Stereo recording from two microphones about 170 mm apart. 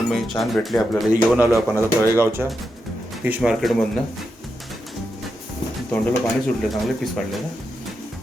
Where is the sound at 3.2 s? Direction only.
5° right (ahead or behind).